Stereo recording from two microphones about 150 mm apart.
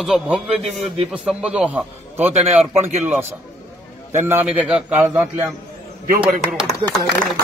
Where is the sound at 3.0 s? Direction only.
15° right (ahead or behind).